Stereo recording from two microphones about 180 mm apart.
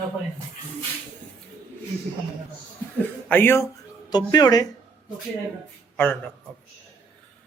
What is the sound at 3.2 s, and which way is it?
A man's voice, 10° left (ahead or behind).